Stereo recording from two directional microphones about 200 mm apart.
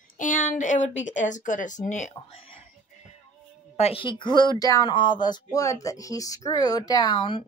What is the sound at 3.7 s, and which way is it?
Speech, 30° left (ahead or behind).